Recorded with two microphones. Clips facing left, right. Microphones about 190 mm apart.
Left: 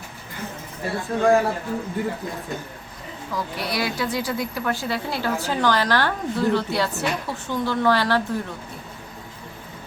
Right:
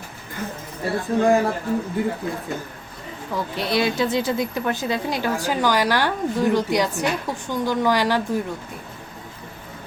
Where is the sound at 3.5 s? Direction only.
25° right (ahead or behind).